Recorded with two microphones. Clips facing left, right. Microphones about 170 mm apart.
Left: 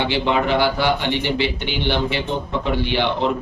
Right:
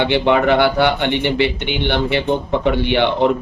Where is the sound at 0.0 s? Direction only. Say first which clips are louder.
Right 5 dB; 60° right (ahead or behind).